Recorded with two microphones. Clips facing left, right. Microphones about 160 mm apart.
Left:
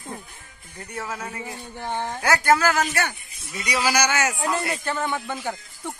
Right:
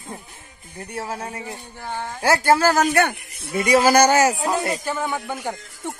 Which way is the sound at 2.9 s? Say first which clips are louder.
Right 8 dB; 55° right (ahead or behind).